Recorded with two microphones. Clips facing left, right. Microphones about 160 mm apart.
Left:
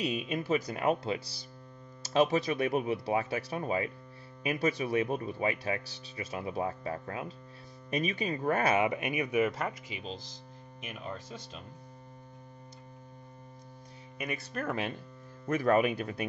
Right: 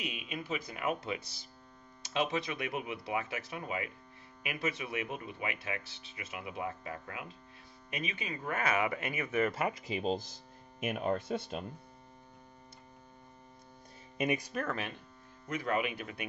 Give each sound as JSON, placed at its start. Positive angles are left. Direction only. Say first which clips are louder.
{"t": 0.0, "sound": "speech", "louder": "left 8 dB", "side_deg": 40}
{"t": 8.7, "sound": "speech", "louder": "left 4 dB", "side_deg": 20}
{"t": 9.9, "sound": "speech", "louder": "right 8 dB", "side_deg": -50}
{"t": 14.1, "sound": "speech", "louder": "right 5 dB", "side_deg": -20}
{"t": 15.4, "sound": "speech", "louder": "left 7 dB", "side_deg": 50}